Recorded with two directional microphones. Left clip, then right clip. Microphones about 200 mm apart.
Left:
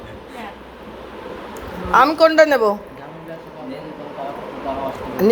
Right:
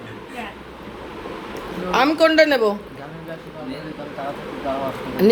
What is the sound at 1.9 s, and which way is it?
Speech, 5° right (ahead or behind).